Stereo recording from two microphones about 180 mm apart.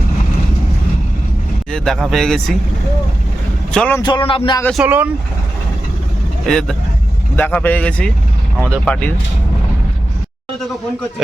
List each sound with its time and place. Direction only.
1.7 s speech: centre (ahead or behind)
3.7 s a man's voice: 5° left (ahead or behind)
4.0 s speech: 25° left (ahead or behind)
4.8 s speech: 10° right (ahead or behind)
6.4 s speech: 5° left (ahead or behind)